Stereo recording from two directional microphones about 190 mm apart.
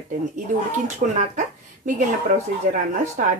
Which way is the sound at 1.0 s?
45° right (ahead or behind).